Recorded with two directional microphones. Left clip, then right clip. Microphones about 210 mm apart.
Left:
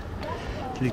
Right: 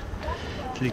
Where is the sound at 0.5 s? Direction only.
5° right (ahead or behind).